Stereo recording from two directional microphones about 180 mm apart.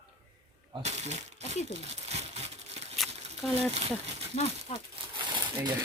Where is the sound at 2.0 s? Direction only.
35° right (ahead or behind).